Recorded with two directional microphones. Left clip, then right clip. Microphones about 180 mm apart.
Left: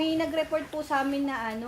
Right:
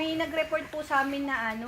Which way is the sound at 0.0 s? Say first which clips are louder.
Left 2 dB; 20° left (ahead or behind).